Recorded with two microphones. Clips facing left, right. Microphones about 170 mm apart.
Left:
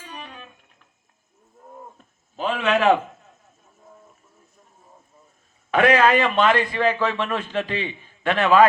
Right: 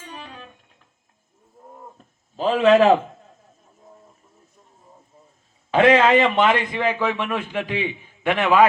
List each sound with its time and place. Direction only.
0.1 s music: 35° right (ahead or behind)
2.3 s a man's voice: 35° right (ahead or behind)
5.7 s a man's voice: 25° right (ahead or behind)